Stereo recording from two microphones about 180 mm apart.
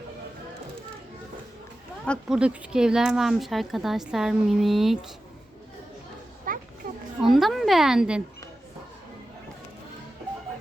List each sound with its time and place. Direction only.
2.0 s speech: 5° right (ahead or behind)
6.5 s children playing: 50° right (ahead or behind)
7.2 s a woman's voice: centre (ahead or behind)